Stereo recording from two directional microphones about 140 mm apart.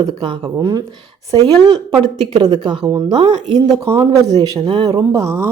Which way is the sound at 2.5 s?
30° right (ahead or behind).